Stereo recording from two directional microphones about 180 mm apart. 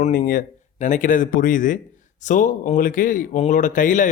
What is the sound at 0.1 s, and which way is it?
Speech, 50° left (ahead or behind).